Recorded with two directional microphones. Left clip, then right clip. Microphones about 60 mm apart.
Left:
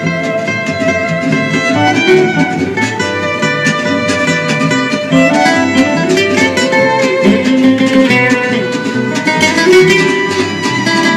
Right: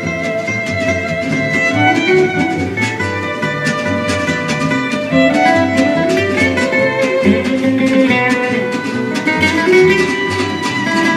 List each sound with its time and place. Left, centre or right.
6.1 s music: left
7.9 s music: left
9.4 s music: left